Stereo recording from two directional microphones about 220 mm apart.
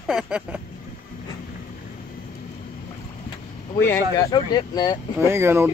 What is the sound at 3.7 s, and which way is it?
Speech, 10° left (ahead or behind).